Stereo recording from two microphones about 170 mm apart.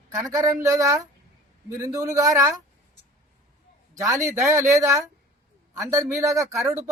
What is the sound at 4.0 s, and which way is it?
A man's voice, 20° right (ahead or behind).